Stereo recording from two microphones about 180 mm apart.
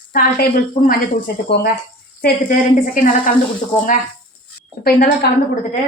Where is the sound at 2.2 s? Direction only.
55° left (ahead or behind).